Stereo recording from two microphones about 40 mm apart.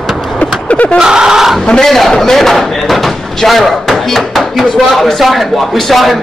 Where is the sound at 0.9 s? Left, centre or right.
Centre.